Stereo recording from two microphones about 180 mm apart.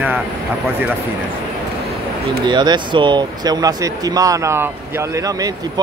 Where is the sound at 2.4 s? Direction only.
25° right (ahead or behind).